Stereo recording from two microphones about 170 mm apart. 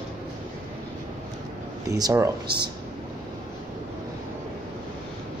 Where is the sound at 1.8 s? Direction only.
20° right (ahead or behind).